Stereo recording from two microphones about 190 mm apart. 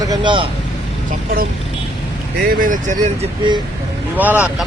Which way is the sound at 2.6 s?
45° right (ahead or behind).